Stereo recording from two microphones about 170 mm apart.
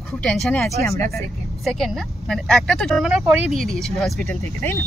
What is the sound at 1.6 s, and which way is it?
Speech, centre (ahead or behind).